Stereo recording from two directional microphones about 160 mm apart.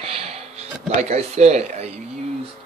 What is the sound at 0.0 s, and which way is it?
Music, 40° right (ahead or behind).